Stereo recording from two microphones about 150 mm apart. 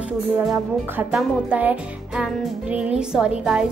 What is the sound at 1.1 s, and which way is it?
A woman's voice, 10° right (ahead or behind).